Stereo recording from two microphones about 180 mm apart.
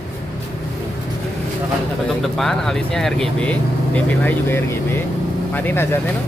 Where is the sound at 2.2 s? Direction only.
Centre (ahead or behind).